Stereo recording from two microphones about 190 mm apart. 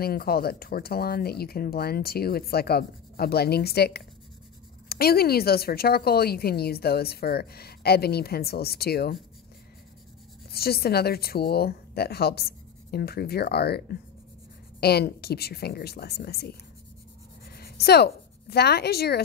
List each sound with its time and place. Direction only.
0.0 s speech: 55° left (ahead or behind)
10.5 s speech: 55° left (ahead or behind)
17.6 s speech: 55° left (ahead or behind)